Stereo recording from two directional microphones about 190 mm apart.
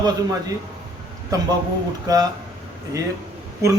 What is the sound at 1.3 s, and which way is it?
Speech, 15° right (ahead or behind).